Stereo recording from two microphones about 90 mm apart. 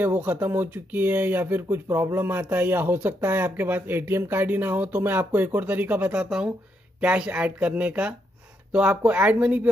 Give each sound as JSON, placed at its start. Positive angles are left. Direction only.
{"t": 0.0, "sound": "speech", "side_deg": -20}